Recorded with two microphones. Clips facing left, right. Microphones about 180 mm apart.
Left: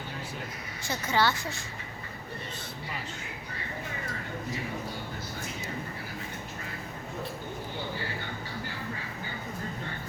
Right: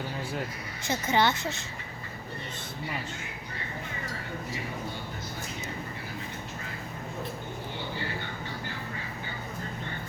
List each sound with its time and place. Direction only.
0.9 s speech: 20° right (ahead or behind)